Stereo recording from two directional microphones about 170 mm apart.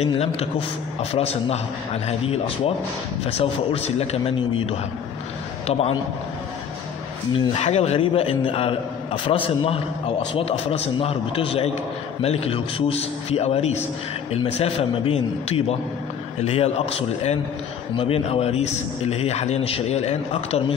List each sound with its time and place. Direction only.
0.0 s a man's voice: 35° left (ahead or behind)
7.3 s a man's voice: 35° left (ahead or behind)